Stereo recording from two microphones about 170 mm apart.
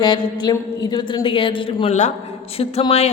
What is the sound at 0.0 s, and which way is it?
A woman's voice, 25° left (ahead or behind).